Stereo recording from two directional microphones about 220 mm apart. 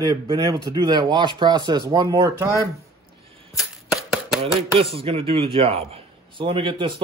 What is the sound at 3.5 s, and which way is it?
Shuffling cards, centre (ahead or behind).